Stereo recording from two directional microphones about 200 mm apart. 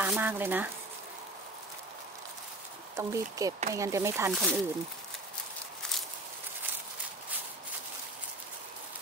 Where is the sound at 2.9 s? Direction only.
15° right (ahead or behind).